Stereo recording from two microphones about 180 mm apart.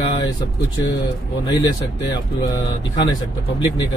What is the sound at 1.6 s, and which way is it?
Speech, 20° left (ahead or behind).